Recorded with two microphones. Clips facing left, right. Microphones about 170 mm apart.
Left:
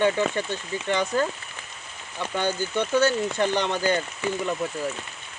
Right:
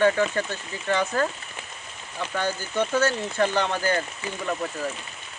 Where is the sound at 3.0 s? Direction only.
15° left (ahead or behind).